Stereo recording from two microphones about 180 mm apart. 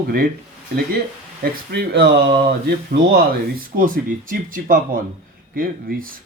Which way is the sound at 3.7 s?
50° right (ahead or behind).